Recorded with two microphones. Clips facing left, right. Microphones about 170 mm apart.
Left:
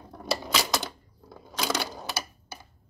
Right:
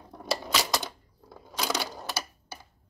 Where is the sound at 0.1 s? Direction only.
Centre (ahead or behind).